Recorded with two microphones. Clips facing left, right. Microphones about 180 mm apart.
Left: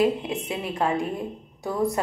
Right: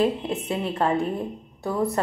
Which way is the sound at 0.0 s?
15° left (ahead or behind).